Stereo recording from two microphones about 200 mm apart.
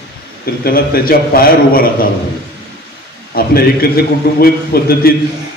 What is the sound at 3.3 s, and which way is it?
A man's voice, 50° left (ahead or behind).